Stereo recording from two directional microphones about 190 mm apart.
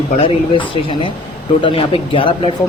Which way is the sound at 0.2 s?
30° left (ahead or behind).